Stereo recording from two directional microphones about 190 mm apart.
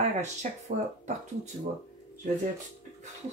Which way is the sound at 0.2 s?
40° right (ahead or behind).